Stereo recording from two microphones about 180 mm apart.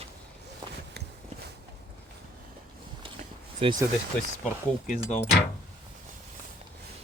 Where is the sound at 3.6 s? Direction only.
25° right (ahead or behind).